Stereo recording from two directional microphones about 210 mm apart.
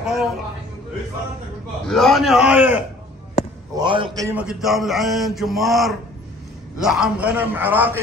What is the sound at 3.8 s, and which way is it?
Speech, 20° right (ahead or behind).